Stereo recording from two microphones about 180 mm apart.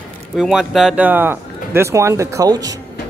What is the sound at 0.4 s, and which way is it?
Speech, centre (ahead or behind).